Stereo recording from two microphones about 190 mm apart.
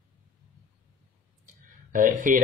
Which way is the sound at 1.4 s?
45° right (ahead or behind).